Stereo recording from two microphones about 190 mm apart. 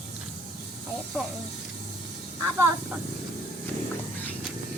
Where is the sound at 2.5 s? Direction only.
10° right (ahead or behind).